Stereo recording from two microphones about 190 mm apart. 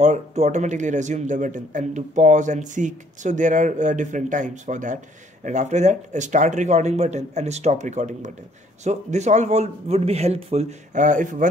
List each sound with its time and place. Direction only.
0.0 s speech: 35° right (ahead or behind)